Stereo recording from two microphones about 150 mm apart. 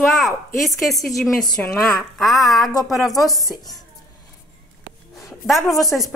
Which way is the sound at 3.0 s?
25° left (ahead or behind).